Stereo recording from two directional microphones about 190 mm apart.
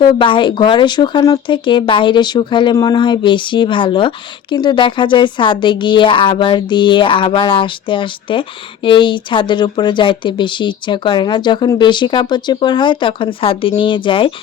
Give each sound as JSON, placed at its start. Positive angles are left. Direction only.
{"t": 0.0, "sound": "speech", "side_deg": 25}